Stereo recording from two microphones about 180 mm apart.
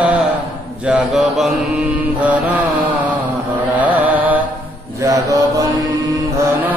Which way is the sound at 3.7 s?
10° right (ahead or behind).